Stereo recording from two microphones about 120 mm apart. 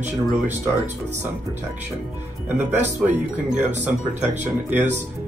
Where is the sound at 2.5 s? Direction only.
20° right (ahead or behind).